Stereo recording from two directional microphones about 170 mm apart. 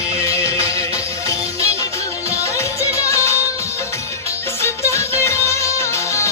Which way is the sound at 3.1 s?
15° left (ahead or behind).